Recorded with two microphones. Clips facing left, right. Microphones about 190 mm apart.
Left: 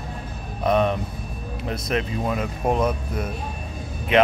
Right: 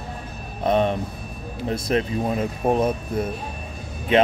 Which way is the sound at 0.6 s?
25° right (ahead or behind).